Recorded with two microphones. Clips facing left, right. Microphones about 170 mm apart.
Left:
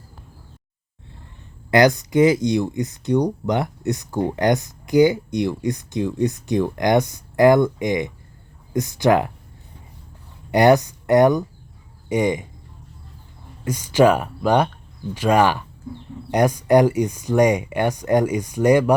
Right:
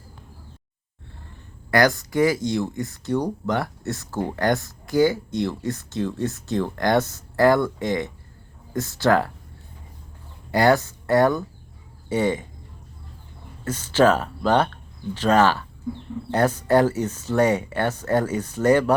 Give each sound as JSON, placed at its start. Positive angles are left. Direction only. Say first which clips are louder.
{"t": 1.7, "sound": "speech", "louder": "left 4 dB", "side_deg": 20}
{"t": 10.5, "sound": "speech", "louder": "left 4 dB", "side_deg": 20}
{"t": 13.7, "sound": "speech", "louder": "left 2 dB", "side_deg": 10}